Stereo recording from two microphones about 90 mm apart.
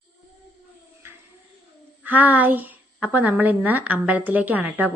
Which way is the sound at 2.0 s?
20° right (ahead or behind).